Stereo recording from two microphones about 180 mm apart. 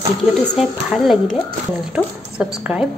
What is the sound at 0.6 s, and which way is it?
Speech, centre (ahead or behind).